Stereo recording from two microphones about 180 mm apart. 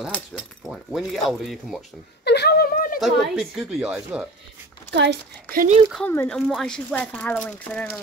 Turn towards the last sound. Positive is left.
turn(degrees=5)  # may be behind; listen again after turning